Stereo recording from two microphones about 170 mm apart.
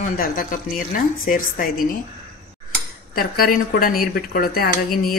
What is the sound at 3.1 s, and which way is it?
Speech, 60° left (ahead or behind).